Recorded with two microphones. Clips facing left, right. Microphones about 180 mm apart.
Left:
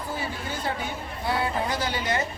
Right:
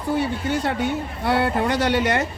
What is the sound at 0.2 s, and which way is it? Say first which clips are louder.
Speech: right 9 dB; 75° right (ahead or behind).